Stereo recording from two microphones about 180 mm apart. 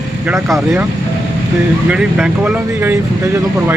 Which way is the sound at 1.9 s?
5° right (ahead or behind).